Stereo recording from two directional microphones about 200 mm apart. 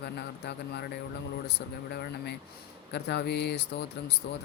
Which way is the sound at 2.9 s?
55° left (ahead or behind).